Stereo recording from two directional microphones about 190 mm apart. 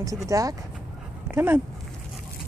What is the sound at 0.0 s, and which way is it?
Speech, 15° right (ahead or behind).